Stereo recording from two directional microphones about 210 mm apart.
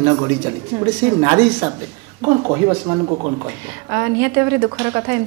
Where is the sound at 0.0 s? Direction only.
20° right (ahead or behind).